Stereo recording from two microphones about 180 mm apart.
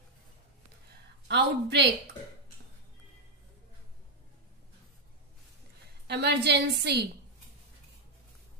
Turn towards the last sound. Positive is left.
turn(degrees=-70)  # may be behind; listen again after turning